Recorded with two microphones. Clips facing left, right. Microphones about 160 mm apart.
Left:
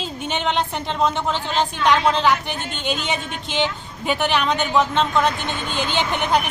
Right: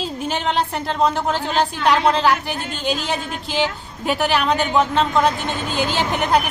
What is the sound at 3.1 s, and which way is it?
Speech, centre (ahead or behind).